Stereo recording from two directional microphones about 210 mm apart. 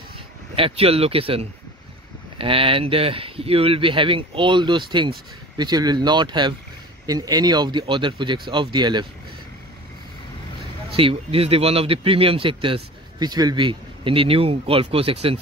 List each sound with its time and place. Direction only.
0.6 s speech: 25° right (ahead or behind)
10.9 s speech: 25° right (ahead or behind)